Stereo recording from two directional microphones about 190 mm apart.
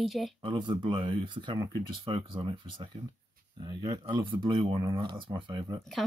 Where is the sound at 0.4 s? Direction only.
25° right (ahead or behind).